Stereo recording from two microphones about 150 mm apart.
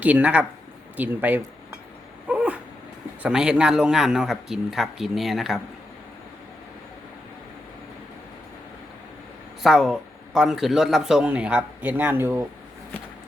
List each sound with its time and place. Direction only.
0.0 s speech: 10° right (ahead or behind)
2.3 s dog: 10° right (ahead or behind)
3.2 s a man's voice: 5° right (ahead or behind)
9.6 s a man's voice: centre (ahead or behind)